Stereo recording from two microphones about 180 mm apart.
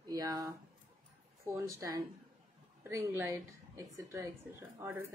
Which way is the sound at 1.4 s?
15° right (ahead or behind).